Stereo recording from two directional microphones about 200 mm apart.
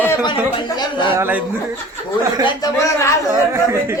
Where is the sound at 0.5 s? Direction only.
25° left (ahead or behind).